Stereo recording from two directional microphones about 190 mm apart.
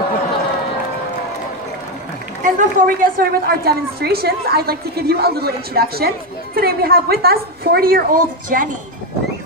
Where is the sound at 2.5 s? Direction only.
45° right (ahead or behind).